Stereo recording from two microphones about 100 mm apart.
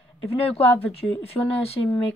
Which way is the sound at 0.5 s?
75° left (ahead or behind).